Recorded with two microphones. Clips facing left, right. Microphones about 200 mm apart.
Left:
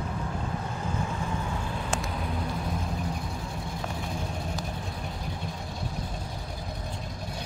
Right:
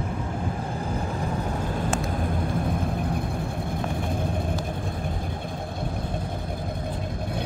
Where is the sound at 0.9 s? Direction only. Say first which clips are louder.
Right 3 dB; 35° right (ahead or behind).